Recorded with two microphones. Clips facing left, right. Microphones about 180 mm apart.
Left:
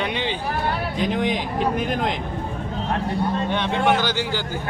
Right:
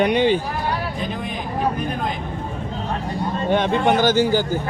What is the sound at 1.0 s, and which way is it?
Speech, 90° left.